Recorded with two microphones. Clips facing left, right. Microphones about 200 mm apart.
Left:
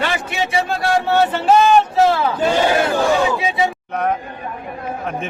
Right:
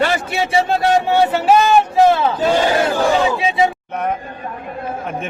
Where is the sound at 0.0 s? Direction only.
40° right (ahead or behind).